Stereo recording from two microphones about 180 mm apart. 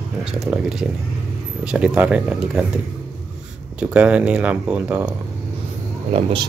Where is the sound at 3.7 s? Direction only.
5° right (ahead or behind).